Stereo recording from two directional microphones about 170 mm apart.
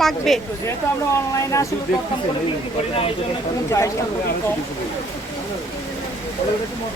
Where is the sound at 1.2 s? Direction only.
15° left (ahead or behind).